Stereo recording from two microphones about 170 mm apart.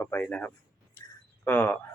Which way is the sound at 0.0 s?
10° left (ahead or behind).